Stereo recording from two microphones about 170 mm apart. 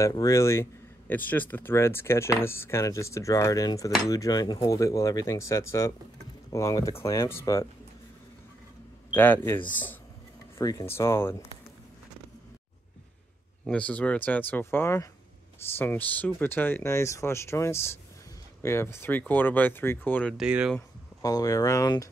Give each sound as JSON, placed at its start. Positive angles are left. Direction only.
{"t": 0.0, "sound": "speech", "side_deg": 20}
{"t": 9.1, "sound": "speech", "side_deg": 10}
{"t": 10.6, "sound": "speech", "side_deg": 20}
{"t": 13.7, "sound": "speech", "side_deg": 10}
{"t": 20.3, "sound": "speech", "side_deg": -5}
{"t": 21.2, "sound": "speech", "side_deg": 20}